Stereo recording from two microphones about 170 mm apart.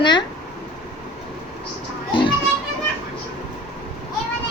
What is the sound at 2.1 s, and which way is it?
Children playing, 30° left (ahead or behind).